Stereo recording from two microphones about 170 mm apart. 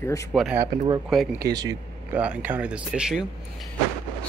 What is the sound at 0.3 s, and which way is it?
Speech, centre (ahead or behind).